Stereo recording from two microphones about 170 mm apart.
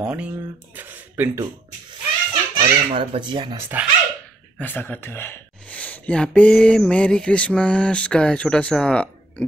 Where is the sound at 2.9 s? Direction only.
30° right (ahead or behind).